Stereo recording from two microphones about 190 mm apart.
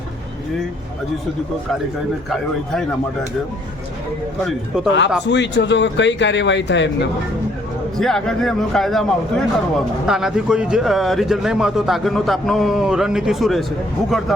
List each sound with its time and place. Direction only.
4.4 s a man's voice: 5° right (ahead or behind)
5.2 s speech: 70° left (ahead or behind)
7.9 s a man's voice: centre (ahead or behind)